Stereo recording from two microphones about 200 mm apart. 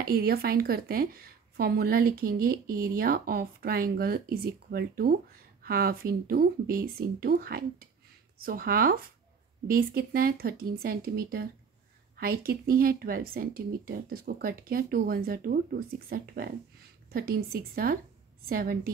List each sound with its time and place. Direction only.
0.0 s a woman's voice: 50° right (ahead or behind)